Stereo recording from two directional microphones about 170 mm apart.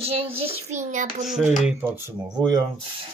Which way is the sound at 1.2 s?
Centre (ahead or behind).